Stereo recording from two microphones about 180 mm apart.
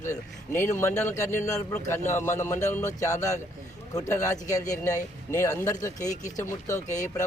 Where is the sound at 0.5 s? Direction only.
45° left (ahead or behind).